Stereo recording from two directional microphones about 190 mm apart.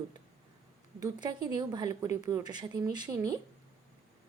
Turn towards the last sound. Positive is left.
turn(degrees=-20)  # may be behind; listen again after turning